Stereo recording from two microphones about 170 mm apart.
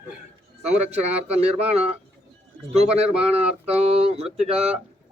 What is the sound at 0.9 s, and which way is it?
Speech, 40° right (ahead or behind).